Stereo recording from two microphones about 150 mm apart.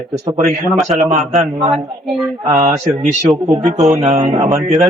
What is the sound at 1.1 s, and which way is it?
Speech, 50° right (ahead or behind).